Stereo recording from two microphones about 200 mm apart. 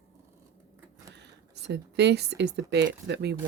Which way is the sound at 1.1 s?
60° right (ahead or behind).